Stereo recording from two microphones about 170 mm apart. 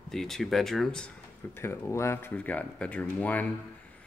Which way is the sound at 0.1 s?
Centre (ahead or behind).